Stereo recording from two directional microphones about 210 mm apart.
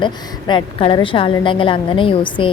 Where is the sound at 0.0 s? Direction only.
20° left (ahead or behind).